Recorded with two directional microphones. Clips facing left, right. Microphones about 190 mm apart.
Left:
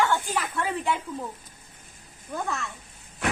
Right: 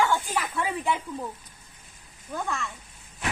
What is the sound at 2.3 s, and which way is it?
Speech, 5° left (ahead or behind).